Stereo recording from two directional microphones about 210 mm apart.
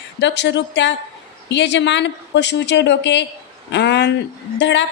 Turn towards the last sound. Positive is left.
turn(degrees=60)  # may be behind; listen again after turning